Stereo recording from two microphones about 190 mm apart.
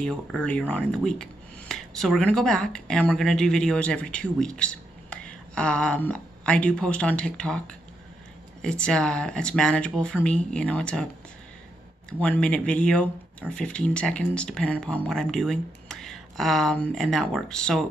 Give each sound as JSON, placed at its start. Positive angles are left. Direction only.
{"t": 0.0, "sound": "speech", "side_deg": 5}
{"t": 12.1, "sound": "speech", "side_deg": 5}